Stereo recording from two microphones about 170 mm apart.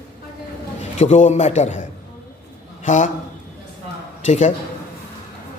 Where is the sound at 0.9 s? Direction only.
45° left (ahead or behind).